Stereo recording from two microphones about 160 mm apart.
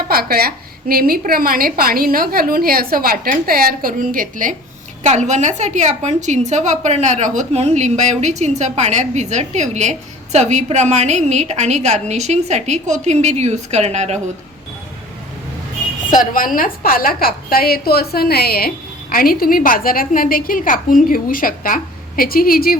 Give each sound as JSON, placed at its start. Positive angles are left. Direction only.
{"t": 0.1, "sound": "a woman's voice", "side_deg": -70}
{"t": 5.0, "sound": "a woman's voice", "side_deg": -45}
{"t": 16.0, "sound": "a woman's voice", "side_deg": 55}
{"t": 19.1, "sound": "a woman's voice", "side_deg": 65}